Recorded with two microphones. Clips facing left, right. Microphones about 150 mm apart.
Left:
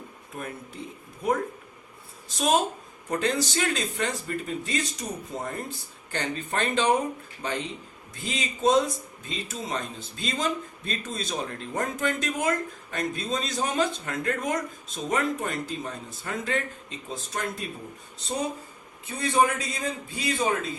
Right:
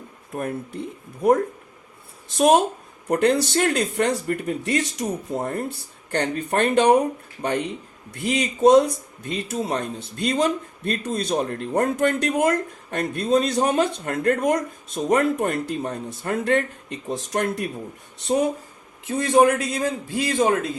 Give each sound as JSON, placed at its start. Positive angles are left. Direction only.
{"t": 0.3, "sound": "speech", "side_deg": -55}
{"t": 3.1, "sound": "speech", "side_deg": -60}
{"t": 6.1, "sound": "speech", "side_deg": -65}
{"t": 18.3, "sound": "speech", "side_deg": -90}
{"t": 19.0, "sound": "a man's voice", "side_deg": -75}